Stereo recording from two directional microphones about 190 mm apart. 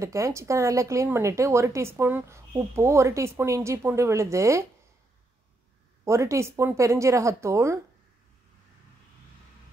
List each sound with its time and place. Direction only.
0.0 s speech: 15° right (ahead or behind)
6.0 s speech: 15° right (ahead or behind)